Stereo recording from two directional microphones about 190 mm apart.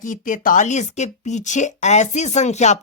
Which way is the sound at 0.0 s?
40° left (ahead or behind).